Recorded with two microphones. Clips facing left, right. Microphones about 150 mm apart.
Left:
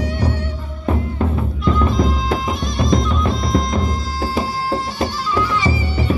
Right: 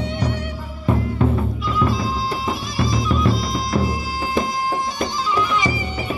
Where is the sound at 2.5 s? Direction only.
5° right (ahead or behind).